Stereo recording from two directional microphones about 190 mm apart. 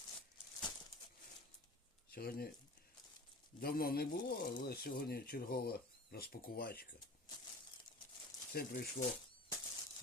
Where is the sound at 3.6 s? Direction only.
50° left (ahead or behind).